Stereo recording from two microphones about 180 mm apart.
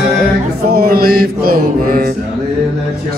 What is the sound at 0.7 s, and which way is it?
Music, 55° right (ahead or behind).